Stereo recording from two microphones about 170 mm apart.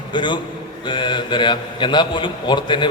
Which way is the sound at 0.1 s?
25° left (ahead or behind).